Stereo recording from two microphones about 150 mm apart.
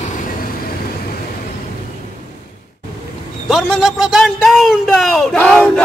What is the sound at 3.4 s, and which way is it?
A man's voice, centre (ahead or behind).